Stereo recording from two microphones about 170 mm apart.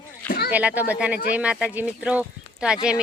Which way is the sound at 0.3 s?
65° left (ahead or behind).